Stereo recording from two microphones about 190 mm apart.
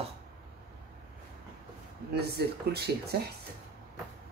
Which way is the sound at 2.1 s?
55° right (ahead or behind).